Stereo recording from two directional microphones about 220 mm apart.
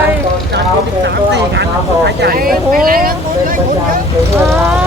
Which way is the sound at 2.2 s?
40° right (ahead or behind).